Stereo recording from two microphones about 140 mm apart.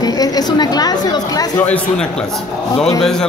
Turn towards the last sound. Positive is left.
turn(degrees=5)  # may be behind; listen again after turning